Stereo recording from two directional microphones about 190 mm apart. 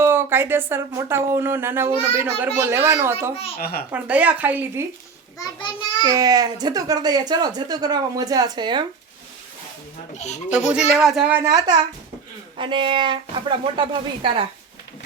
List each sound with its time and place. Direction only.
0.0 s speech: 10° right (ahead or behind)
3.6 s a child's voice: 55° left (ahead or behind)
3.9 s speech: 5° right (ahead or behind)
6.0 s speech: 20° right (ahead or behind)
10.2 s speech: 35° left (ahead or behind)
10.9 s speech: 5° right (ahead or behind); by 14.4 s 25° right (ahead or behind)